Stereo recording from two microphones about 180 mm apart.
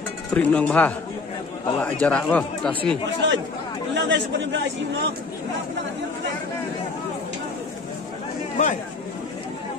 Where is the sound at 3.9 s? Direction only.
90° right.